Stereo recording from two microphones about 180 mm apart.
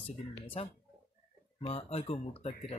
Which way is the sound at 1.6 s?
35° left (ahead or behind).